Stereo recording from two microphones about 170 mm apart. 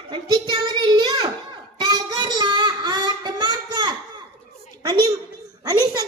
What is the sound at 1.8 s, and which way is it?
Child singing, 25° right (ahead or behind).